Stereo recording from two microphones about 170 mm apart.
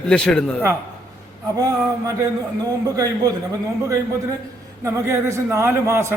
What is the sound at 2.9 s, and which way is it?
Speech, 20° right (ahead or behind).